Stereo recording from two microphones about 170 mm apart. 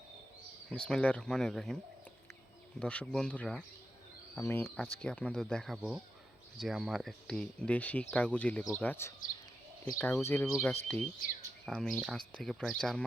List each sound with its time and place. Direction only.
0.7 s speech: 5° left (ahead or behind)
4.4 s speech: 15° left (ahead or behind)